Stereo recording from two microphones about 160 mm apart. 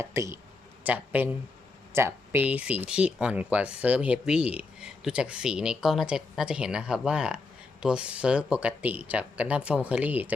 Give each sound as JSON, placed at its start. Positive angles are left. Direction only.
{"t": 0.0, "sound": "speech", "side_deg": -15}